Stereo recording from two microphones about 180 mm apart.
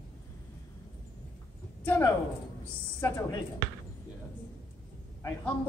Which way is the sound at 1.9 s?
15° left (ahead or behind).